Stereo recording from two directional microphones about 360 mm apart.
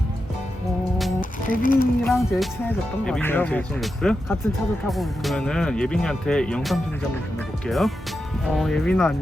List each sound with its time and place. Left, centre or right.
1.2 s music: left
2.0 s speech: centre